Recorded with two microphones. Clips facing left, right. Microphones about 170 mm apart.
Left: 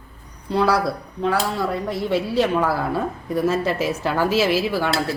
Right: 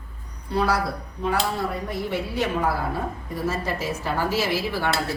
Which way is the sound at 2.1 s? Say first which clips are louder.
Left 7 dB; 80° left.